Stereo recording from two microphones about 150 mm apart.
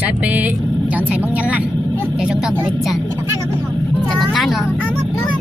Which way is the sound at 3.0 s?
20° right (ahead or behind).